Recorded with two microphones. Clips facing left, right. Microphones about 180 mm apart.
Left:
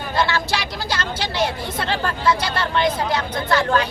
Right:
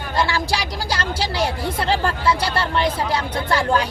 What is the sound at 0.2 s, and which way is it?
Vehicle, 10° right (ahead or behind).